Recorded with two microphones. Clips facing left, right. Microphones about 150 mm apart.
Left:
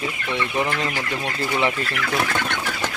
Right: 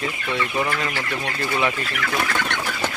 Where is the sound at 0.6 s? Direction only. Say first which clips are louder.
Left 1 dB; 20° left (ahead or behind).